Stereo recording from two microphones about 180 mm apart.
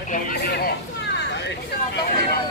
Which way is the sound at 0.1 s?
55° left (ahead or behind).